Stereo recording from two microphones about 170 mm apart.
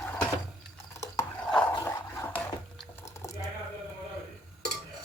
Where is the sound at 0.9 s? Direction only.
20° left (ahead or behind).